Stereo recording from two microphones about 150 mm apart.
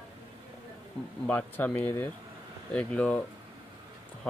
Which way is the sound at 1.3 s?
10° left (ahead or behind).